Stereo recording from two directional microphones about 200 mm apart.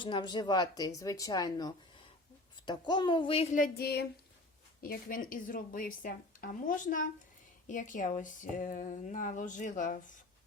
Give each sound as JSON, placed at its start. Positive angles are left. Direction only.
{"t": 0.0, "sound": "a woman's voice", "side_deg": 25}